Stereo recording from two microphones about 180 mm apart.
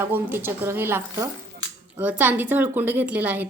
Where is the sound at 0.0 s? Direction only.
10° right (ahead or behind).